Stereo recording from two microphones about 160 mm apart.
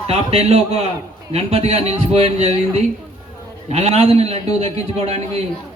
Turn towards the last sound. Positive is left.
turn(degrees=-40)  # may be behind; listen again after turning